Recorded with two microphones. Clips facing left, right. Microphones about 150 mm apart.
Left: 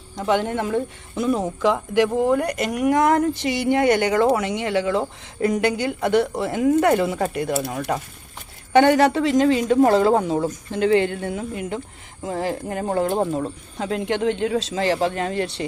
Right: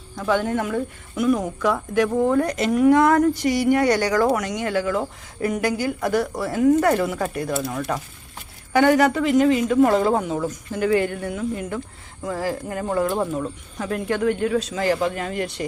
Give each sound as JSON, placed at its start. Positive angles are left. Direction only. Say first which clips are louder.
{"t": 0.2, "sound": "speech", "louder": "even", "side_deg": 20}